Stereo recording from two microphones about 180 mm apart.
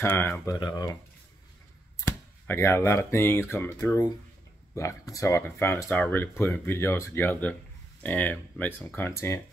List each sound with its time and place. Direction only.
0.0 s speech: 15° left (ahead or behind)
2.0 s speech: 15° left (ahead or behind)